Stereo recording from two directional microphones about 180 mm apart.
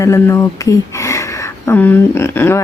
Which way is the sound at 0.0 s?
15° left (ahead or behind).